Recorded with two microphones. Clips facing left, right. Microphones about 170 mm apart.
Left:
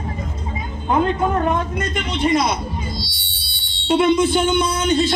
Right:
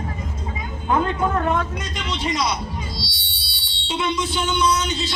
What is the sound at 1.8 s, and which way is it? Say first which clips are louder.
Speech: left 6 dB; 55° left (ahead or behind).